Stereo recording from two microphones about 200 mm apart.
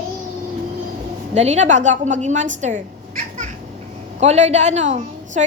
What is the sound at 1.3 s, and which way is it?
A woman's voice, 35° right (ahead or behind).